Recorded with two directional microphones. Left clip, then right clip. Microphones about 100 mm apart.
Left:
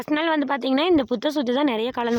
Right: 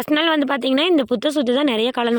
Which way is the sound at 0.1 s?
30° right (ahead or behind).